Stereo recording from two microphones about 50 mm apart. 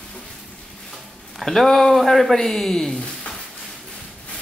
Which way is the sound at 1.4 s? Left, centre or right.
Centre.